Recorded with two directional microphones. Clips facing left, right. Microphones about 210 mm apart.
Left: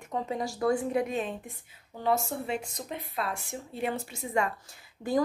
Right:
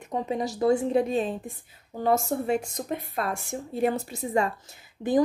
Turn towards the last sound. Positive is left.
turn(degrees=-20)  # may be behind; listen again after turning